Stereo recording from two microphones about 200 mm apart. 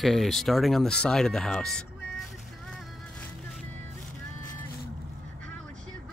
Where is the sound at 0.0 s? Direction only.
Centre (ahead or behind).